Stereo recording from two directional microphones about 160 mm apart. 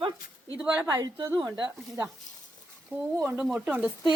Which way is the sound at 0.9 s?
20° right (ahead or behind).